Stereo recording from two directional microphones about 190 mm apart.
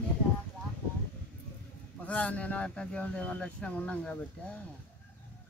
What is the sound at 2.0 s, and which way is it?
Speech, 5° left (ahead or behind).